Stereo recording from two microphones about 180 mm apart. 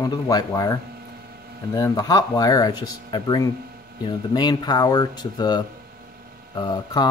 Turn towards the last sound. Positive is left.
turn(degrees=25)  # may be behind; listen again after turning